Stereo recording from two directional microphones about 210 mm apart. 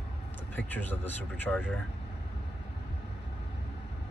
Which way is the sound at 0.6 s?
10° left (ahead or behind).